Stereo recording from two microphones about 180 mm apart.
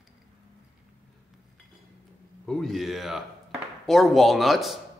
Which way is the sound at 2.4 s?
Centre (ahead or behind).